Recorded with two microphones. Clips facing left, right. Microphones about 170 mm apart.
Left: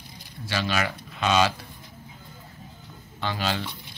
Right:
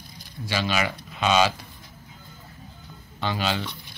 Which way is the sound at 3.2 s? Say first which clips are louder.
Right 2 dB; centre (ahead or behind).